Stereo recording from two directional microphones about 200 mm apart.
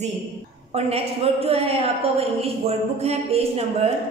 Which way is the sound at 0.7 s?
30° right (ahead or behind).